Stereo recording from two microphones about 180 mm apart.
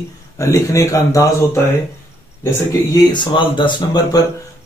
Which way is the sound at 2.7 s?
25° left (ahead or behind).